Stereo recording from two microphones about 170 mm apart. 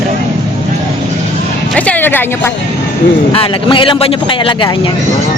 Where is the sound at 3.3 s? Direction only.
30° left (ahead or behind).